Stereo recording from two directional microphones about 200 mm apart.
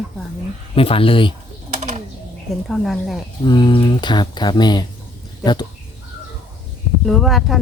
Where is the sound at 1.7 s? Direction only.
35° right (ahead or behind).